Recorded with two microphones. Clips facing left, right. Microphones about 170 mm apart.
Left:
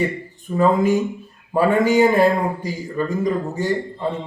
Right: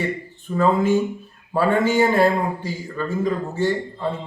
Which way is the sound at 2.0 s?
15° left (ahead or behind).